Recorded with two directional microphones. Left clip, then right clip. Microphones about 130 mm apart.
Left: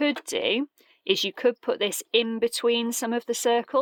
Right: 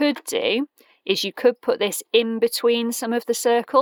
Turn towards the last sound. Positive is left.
turn(degrees=-25)  # may be behind; listen again after turning